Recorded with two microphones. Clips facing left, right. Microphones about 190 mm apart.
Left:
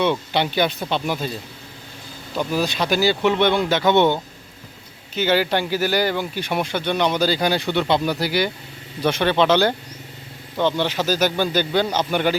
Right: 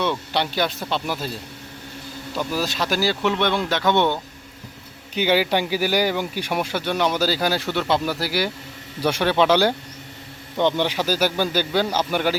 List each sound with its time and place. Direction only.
0.0 s speech: centre (ahead or behind)
2.6 s speech: centre (ahead or behind)
5.1 s a man's voice: 10° right (ahead or behind)